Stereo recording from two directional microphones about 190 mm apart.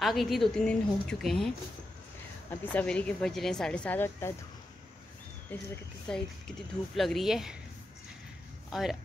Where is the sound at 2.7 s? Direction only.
5° left (ahead or behind).